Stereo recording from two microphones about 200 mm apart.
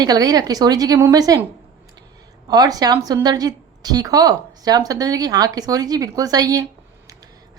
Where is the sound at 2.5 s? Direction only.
20° right (ahead or behind).